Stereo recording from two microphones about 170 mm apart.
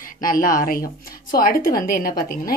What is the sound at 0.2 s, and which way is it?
A woman's voice, 55° left (ahead or behind).